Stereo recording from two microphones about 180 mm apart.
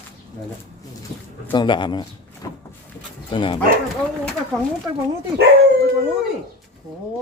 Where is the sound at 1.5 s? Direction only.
25° left (ahead or behind).